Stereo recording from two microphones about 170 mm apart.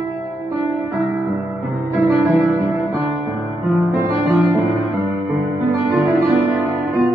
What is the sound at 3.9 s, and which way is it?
Music, 10° right (ahead or behind).